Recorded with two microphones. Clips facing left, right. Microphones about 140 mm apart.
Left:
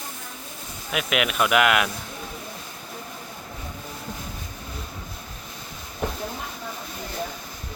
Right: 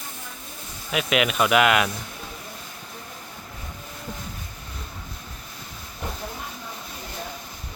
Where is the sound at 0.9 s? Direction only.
Centre (ahead or behind).